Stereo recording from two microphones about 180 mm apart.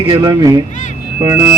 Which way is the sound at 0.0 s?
25° right (ahead or behind).